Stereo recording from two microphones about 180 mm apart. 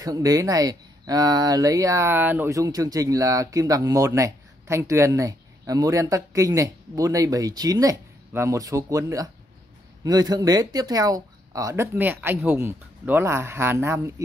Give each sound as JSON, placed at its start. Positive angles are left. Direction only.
{"t": 0.0, "sound": "speech", "side_deg": -20}